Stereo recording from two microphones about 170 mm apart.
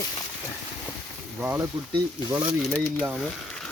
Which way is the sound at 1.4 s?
15° right (ahead or behind).